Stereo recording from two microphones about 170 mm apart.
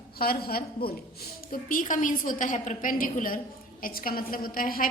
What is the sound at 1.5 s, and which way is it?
A woman's voice, 55° left (ahead or behind).